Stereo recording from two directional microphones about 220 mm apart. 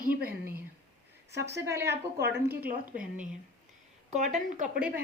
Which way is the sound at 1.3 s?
50° right (ahead or behind).